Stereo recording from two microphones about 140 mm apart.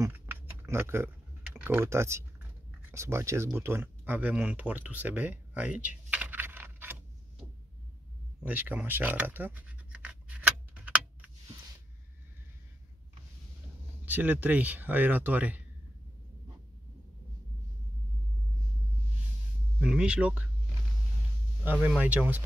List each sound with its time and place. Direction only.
0.0 s typing: 15° right (ahead or behind)
2.9 s speech: 20° right (ahead or behind)
8.4 s scratch: 10° right (ahead or behind)
14.0 s speech: 10° right (ahead or behind)
19.8 s speech: 5° right (ahead or behind)
21.8 s speech: 10° right (ahead or behind)